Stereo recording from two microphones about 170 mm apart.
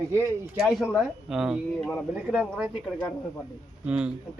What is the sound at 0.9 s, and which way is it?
Speech, 5° right (ahead or behind).